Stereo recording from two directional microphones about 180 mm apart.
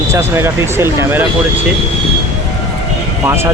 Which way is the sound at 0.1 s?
15° right (ahead or behind).